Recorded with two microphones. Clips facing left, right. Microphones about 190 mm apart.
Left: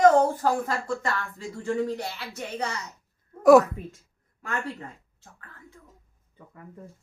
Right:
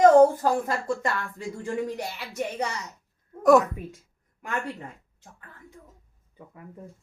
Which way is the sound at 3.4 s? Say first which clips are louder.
Left 3 dB; 5° left (ahead or behind).